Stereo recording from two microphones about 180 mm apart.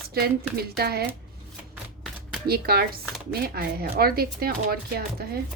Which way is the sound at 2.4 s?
60° right (ahead or behind).